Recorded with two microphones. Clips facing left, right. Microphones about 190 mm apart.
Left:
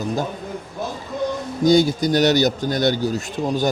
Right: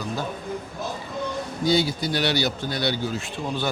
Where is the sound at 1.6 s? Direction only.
45° left (ahead or behind).